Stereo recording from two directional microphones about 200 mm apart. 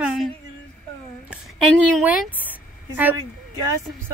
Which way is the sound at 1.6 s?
Centre (ahead or behind).